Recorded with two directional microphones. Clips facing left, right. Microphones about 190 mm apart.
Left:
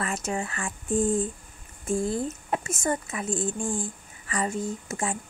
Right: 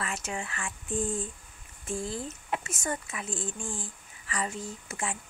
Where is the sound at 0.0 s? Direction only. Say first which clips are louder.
Left 6 dB; 40° left (ahead or behind).